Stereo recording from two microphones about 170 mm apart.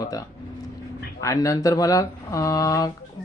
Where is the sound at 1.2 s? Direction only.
20° left (ahead or behind).